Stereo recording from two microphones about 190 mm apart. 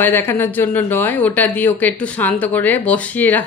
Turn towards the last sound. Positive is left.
turn(degrees=10)  # may be behind; listen again after turning